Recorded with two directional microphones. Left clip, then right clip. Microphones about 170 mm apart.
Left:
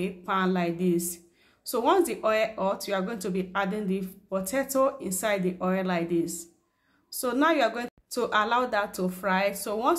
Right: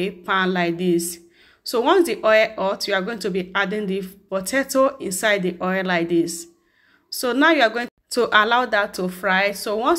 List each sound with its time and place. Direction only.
0.0 s a woman's voice: 20° right (ahead or behind)